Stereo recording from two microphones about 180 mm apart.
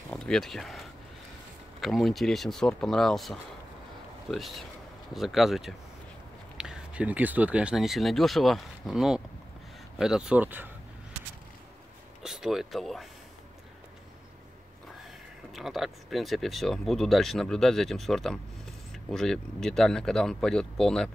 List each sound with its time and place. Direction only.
0.1 s speech: 5° left (ahead or behind)
12.2 s speech: 5° right (ahead or behind)
15.5 s speech: centre (ahead or behind)